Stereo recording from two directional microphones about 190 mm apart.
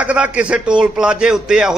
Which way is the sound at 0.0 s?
5° right (ahead or behind).